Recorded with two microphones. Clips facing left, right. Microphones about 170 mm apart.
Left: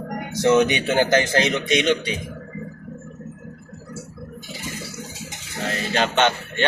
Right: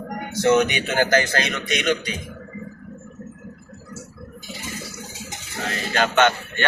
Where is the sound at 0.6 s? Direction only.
25° left (ahead or behind).